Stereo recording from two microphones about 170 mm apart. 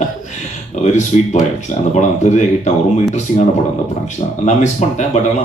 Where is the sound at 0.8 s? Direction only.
45° left (ahead or behind).